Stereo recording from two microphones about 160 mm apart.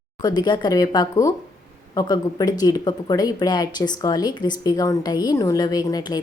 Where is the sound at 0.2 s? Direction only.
25° left (ahead or behind).